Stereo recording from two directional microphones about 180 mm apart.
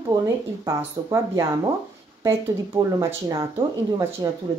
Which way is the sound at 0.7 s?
15° right (ahead or behind).